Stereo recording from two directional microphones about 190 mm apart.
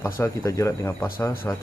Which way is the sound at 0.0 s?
15° left (ahead or behind).